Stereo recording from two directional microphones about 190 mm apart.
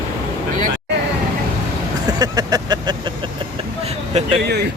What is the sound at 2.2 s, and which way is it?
Vehicle, 20° right (ahead or behind).